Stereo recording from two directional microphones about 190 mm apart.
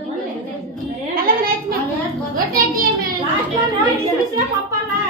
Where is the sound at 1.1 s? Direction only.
50° right (ahead or behind).